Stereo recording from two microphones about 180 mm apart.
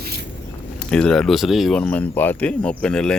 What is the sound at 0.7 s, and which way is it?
Speech, 5° left (ahead or behind).